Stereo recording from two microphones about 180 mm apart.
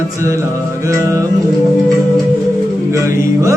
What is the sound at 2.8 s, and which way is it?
Music, 15° right (ahead or behind).